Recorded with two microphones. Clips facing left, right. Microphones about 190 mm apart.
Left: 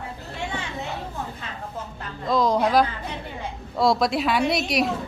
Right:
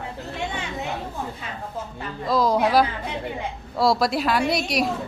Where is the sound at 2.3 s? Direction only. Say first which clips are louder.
Even; 5° right (ahead or behind).